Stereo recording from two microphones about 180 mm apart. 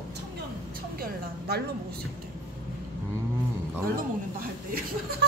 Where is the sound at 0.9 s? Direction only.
55° right (ahead or behind).